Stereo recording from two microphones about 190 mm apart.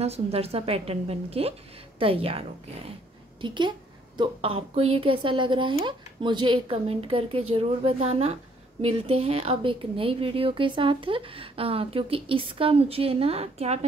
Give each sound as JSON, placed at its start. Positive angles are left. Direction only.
{"t": 0.0, "sound": "a woman's voice", "side_deg": -35}